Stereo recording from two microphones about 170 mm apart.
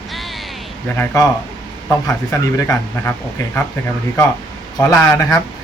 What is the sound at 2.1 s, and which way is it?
Speech, 15° left (ahead or behind).